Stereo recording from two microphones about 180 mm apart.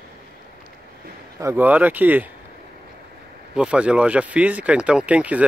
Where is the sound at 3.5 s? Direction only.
5° right (ahead or behind).